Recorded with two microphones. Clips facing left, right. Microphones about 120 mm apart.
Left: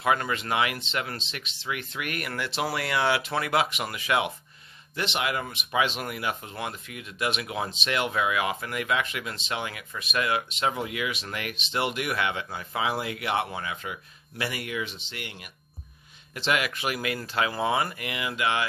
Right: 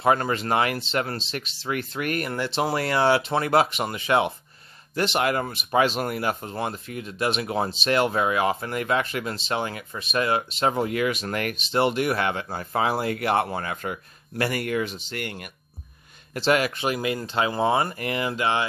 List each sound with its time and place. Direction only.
0.0 s speech: 35° right (ahead or behind)
11.7 s speech: 35° right (ahead or behind); by 15.5 s 50° right (ahead or behind)
16.3 s speech: 35° right (ahead or behind)